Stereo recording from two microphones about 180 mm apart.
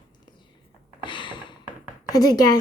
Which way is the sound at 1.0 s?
25° left (ahead or behind).